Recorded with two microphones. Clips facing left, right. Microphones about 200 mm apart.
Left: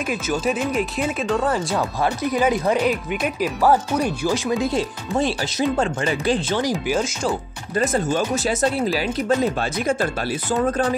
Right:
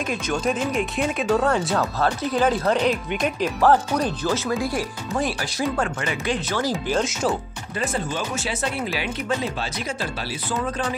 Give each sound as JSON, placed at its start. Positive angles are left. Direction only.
{"t": 0.1, "sound": "speech", "side_deg": 5}
{"t": 1.8, "sound": "speech", "side_deg": 10}
{"t": 6.6, "sound": "speech", "side_deg": 15}
{"t": 7.7, "sound": "speech", "side_deg": 45}